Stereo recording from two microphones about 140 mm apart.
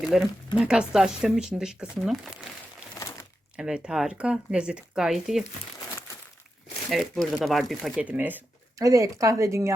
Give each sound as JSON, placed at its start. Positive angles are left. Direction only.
{"t": 0.0, "sound": "speech", "side_deg": 0}
{"t": 3.6, "sound": "speech", "side_deg": -5}
{"t": 6.9, "sound": "speech", "side_deg": 0}
{"t": 7.9, "sound": "speech", "side_deg": -10}
{"t": 8.8, "sound": "speech", "side_deg": -25}